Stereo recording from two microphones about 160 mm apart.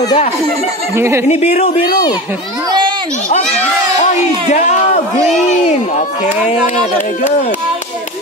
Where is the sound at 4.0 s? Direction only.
50° left (ahead or behind).